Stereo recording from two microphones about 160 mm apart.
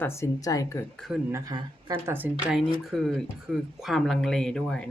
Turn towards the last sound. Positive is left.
turn(degrees=5)  # may be behind; listen again after turning